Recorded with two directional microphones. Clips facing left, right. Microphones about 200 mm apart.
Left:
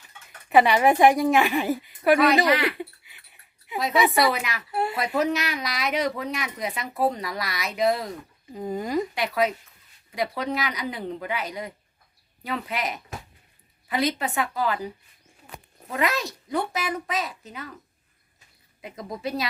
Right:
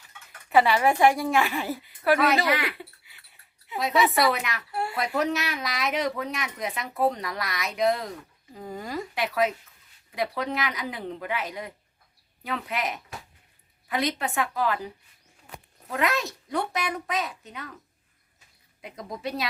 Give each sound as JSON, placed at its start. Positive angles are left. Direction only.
{"t": 0.5, "sound": "a woman's voice", "side_deg": 20}
{"t": 2.5, "sound": "speech", "side_deg": -5}
{"t": 3.8, "sound": "speech", "side_deg": 0}
{"t": 4.7, "sound": "a woman's voice", "side_deg": 20}
{"t": 4.9, "sound": "speech", "side_deg": 0}
{"t": 8.5, "sound": "a woman's voice", "side_deg": 20}
{"t": 9.1, "sound": "speech", "side_deg": 0}
{"t": 15.9, "sound": "speech", "side_deg": 0}
{"t": 18.8, "sound": "speech", "side_deg": 0}